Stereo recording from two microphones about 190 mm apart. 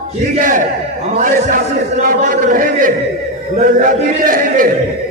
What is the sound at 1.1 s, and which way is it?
A man's voice, 45° right (ahead or behind).